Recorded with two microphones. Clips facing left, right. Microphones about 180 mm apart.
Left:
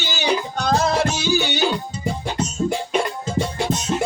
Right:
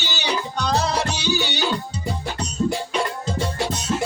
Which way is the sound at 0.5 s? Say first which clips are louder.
Left 2 dB; 45° left (ahead or behind).